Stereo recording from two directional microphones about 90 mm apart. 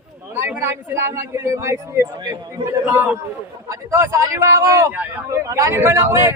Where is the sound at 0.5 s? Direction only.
25° right (ahead or behind).